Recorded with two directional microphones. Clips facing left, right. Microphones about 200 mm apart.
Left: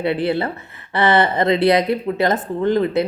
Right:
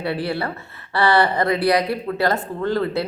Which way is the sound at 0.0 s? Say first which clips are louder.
Left 4 dB; 20° left (ahead or behind).